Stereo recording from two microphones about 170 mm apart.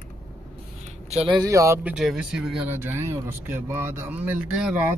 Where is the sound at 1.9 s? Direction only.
5° right (ahead or behind).